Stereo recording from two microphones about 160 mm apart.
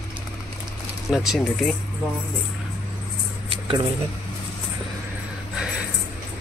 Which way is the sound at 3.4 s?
30° right (ahead or behind).